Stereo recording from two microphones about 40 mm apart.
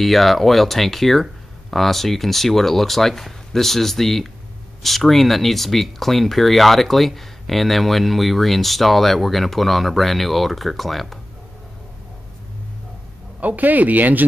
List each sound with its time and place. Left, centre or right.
0.0 s speech: centre
13.4 s speech: right